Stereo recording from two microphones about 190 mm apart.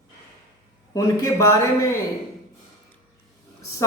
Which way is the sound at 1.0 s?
15° left (ahead or behind).